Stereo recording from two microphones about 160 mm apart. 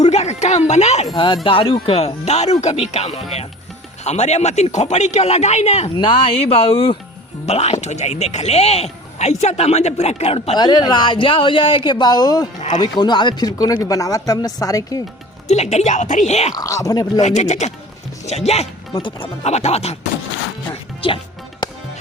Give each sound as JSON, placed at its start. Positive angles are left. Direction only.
{"t": 0.0, "sound": "music", "side_deg": 45}
{"t": 1.1, "sound": "speech", "side_deg": 30}
{"t": 15.4, "sound": "speech", "side_deg": 45}
{"t": 16.6, "sound": "speech", "side_deg": 20}
{"t": 17.2, "sound": "speech", "side_deg": 45}